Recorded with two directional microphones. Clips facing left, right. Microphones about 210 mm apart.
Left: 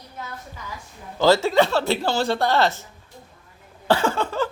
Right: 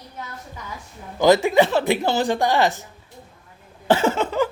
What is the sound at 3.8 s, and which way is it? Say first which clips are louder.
Speech: right 2 dB; 20° right (ahead or behind).